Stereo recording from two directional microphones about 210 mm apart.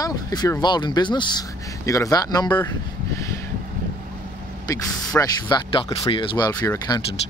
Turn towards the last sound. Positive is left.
turn(degrees=20)  # may be behind; listen again after turning